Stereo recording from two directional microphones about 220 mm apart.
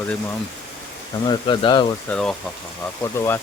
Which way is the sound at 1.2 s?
20° left (ahead or behind).